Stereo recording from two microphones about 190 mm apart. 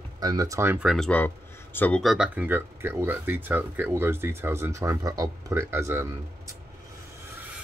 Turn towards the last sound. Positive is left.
turn(degrees=-15)  # may be behind; listen again after turning